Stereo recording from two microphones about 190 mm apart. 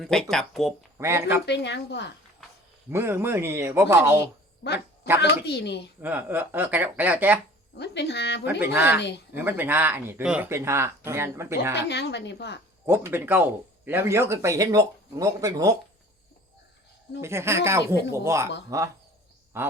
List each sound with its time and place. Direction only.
0.0 s speech: 5° left (ahead or behind)
0.9 s speech: 15° right (ahead or behind)
1.5 s a woman's voice: 65° left (ahead or behind)
2.9 s speech: 15° right (ahead or behind)
5.2 s a woman's voice: 60° left (ahead or behind)
6.0 s speech: 10° right (ahead or behind)
7.8 s a woman's voice: 65° left (ahead or behind)
8.6 s speech: 10° right (ahead or behind)
9.0 s a woman's voice: 65° left (ahead or behind)
9.3 s speech: 10° right (ahead or behind)
11.9 s a woman's voice: 60° left (ahead or behind)
12.8 s speech: 15° right (ahead or behind)
17.2 s speech: 15° right (ahead or behind)